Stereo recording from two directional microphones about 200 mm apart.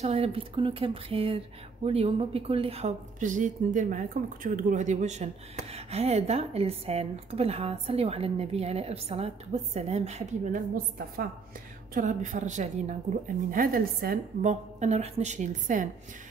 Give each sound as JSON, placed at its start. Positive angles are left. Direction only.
{"t": 0.0, "sound": "speech", "side_deg": -30}
{"t": 11.9, "sound": "speech", "side_deg": -40}